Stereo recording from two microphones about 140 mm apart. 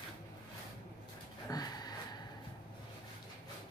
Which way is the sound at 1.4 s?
30° left (ahead or behind).